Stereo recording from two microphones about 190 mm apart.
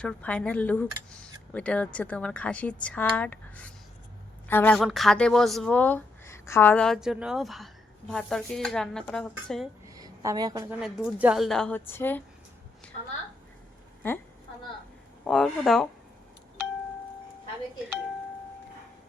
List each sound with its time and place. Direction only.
0.0 s speech: 5° left (ahead or behind)
9.8 s a sound: 20° right (ahead or behind)
10.7 s speech: 5° right (ahead or behind)
15.2 s speech: 5° left (ahead or behind)